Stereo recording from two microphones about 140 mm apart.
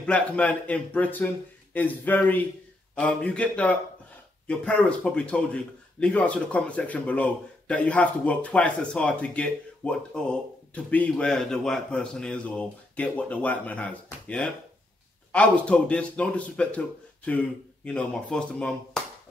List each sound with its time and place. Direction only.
0.0 s a man's voice: 10° left (ahead or behind)